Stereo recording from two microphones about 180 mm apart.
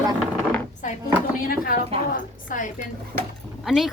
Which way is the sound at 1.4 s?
55° left (ahead or behind).